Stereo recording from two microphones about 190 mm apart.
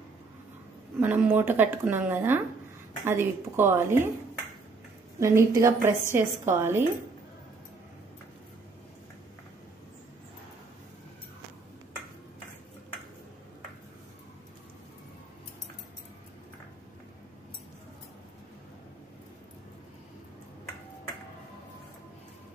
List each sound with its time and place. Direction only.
0.9 s a woman's voice: 10° right (ahead or behind)
5.2 s a woman's voice: 15° right (ahead or behind)